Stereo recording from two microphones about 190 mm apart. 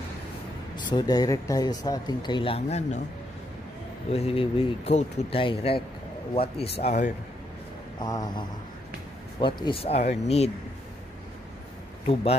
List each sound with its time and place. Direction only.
0.7 s a man's voice: 25° left (ahead or behind)
4.1 s speech: 30° left (ahead or behind)
8.0 s a man's voice: 20° left (ahead or behind)